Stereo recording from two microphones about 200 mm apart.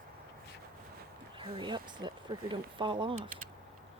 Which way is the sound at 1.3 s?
25° right (ahead or behind).